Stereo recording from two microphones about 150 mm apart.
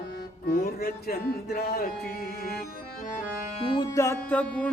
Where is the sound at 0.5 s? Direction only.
90° left.